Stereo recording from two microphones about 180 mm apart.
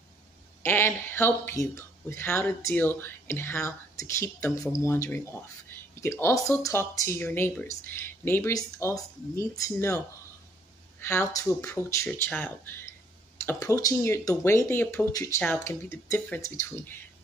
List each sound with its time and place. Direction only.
0.7 s speech: 10° left (ahead or behind)